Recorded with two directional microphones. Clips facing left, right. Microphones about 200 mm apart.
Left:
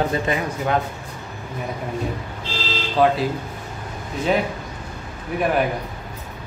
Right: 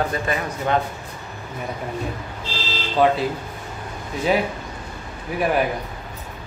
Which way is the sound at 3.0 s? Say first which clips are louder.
Even; centre (ahead or behind).